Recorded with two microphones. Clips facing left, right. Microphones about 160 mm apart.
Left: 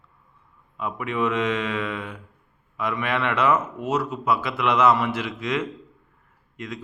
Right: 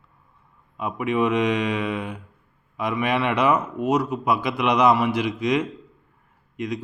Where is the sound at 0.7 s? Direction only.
15° right (ahead or behind).